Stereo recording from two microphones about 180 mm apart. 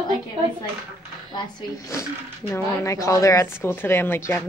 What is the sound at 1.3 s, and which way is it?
Speech, 20° left (ahead or behind).